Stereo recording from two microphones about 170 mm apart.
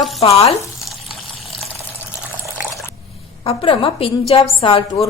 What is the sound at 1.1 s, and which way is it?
Water, centre (ahead or behind).